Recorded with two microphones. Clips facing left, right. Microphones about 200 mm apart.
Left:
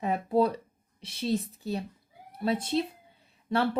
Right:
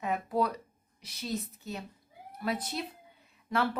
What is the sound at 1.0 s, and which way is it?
Speech, 30° left (ahead or behind).